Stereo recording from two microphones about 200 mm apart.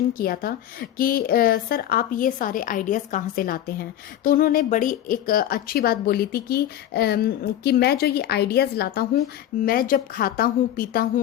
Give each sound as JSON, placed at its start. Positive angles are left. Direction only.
{"t": 0.1, "sound": "speech", "side_deg": 45}